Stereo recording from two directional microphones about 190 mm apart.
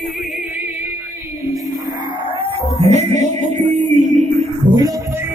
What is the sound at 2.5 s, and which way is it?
Music, 35° right (ahead or behind).